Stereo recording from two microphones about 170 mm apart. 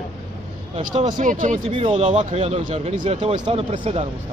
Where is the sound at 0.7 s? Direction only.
40° right (ahead or behind).